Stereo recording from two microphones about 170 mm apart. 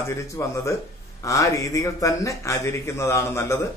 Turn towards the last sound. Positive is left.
turn(degrees=15)  # may be behind; listen again after turning